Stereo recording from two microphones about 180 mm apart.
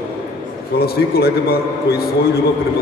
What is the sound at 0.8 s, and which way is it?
Speech, 60° left (ahead or behind).